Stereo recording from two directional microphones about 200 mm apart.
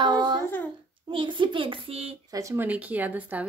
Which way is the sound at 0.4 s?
10° left (ahead or behind).